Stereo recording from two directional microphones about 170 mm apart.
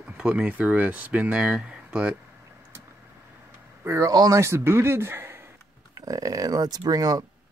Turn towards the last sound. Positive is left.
turn(degrees=-20)  # may be behind; listen again after turning